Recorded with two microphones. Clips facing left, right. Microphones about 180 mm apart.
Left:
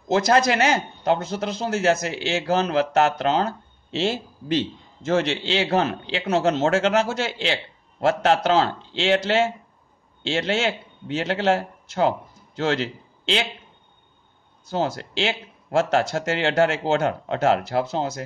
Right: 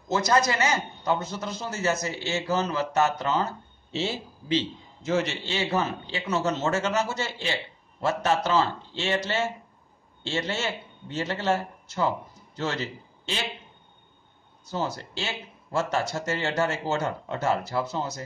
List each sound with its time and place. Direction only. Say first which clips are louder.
0.1 s a man's voice: left 5 dB; 80° left
5.7 s a man's voice: left 5 dB; 75° left (ahead or behind)
14.7 s a man's voice: left 5 dB; 85° left